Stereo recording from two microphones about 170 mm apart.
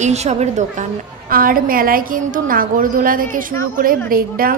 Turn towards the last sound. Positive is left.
turn(degrees=-60)  # may be behind; listen again after turning